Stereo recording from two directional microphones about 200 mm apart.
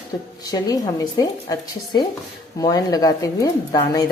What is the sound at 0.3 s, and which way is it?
A woman's voice, 20° left (ahead or behind).